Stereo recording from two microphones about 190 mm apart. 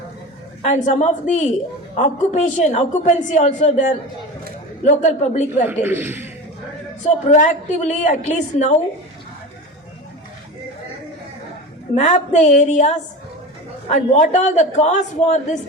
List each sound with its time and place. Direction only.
0.6 s a woman's voice: 40° left (ahead or behind)
5.8 s a man's voice: 10° right (ahead or behind)
7.0 s a woman's voice: 40° left (ahead or behind)
11.9 s a woman's voice: 40° left (ahead or behind)